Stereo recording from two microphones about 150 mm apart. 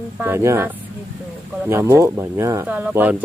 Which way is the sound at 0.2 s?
15° right (ahead or behind).